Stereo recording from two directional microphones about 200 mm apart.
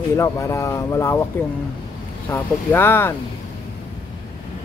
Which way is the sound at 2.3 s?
10° left (ahead or behind).